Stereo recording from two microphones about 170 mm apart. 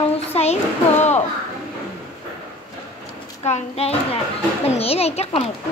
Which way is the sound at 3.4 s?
40° left (ahead or behind).